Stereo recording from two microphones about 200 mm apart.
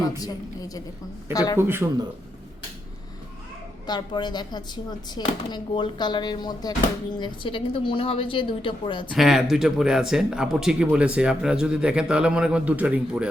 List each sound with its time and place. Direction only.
0.2 s a woman's voice: 20° left (ahead or behind)
1.5 s speech: 10° right (ahead or behind)
3.8 s speech: 20° left (ahead or behind)
9.1 s speech: centre (ahead or behind)